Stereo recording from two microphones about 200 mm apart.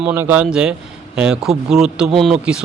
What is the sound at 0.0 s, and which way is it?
Speech, 10° right (ahead or behind).